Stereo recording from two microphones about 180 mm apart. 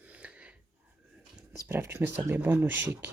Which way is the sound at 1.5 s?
15° right (ahead or behind).